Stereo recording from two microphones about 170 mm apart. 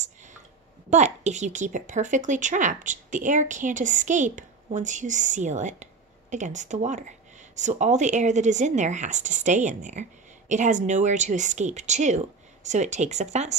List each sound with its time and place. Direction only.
0.8 s a woman's voice: 40° right (ahead or behind)